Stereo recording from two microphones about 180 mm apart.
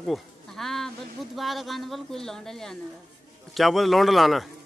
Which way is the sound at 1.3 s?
Centre (ahead or behind).